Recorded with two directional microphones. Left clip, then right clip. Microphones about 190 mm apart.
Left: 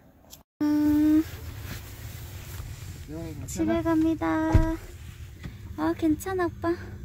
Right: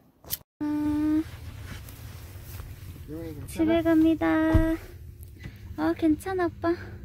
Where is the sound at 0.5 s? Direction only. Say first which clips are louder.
Left 5 dB; 10° left (ahead or behind).